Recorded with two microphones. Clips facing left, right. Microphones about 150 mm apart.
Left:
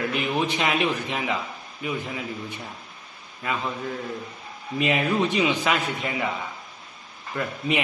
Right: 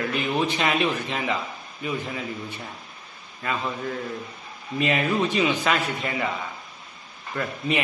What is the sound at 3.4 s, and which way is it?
Speech, 10° left (ahead or behind).